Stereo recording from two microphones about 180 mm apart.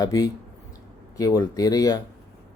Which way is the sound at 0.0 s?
20° left (ahead or behind).